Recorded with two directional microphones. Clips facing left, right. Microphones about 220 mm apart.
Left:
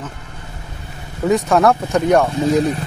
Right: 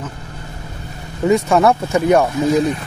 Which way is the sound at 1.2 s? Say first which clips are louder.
Right 1 dB; centre (ahead or behind).